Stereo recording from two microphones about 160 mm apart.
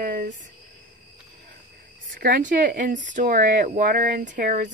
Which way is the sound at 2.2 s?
60° right (ahead or behind).